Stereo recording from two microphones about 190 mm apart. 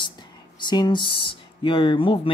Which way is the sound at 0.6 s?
25° left (ahead or behind).